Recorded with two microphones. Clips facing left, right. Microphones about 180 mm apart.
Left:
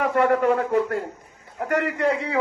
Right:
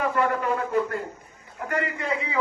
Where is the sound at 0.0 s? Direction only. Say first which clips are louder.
Left 5 dB; 65° left (ahead or behind).